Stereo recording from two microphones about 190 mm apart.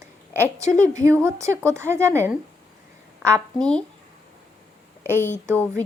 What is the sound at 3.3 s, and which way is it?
Speech, 5° left (ahead or behind).